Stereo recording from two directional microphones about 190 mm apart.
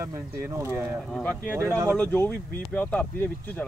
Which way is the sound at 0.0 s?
15° right (ahead or behind).